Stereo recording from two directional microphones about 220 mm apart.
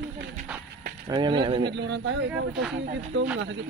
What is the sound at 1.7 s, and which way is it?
A man's voice, 50° right (ahead or behind).